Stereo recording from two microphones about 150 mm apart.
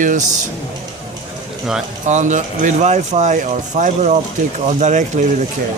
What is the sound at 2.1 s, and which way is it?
Speech, 55° right (ahead or behind).